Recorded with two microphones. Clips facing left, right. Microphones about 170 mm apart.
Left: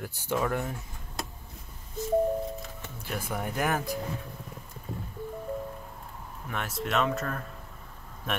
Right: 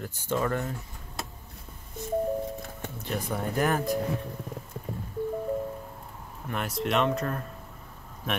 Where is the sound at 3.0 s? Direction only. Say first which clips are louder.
Right 2 dB; 5° left (ahead or behind).